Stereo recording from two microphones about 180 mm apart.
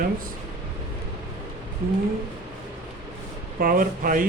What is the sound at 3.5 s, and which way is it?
Speech, 50° right (ahead or behind).